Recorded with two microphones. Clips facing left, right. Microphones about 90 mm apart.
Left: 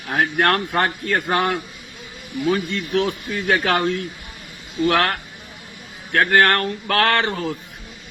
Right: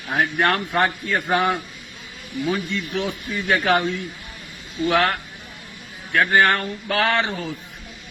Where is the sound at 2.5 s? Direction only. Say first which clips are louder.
Left 4 dB; 65° left (ahead or behind).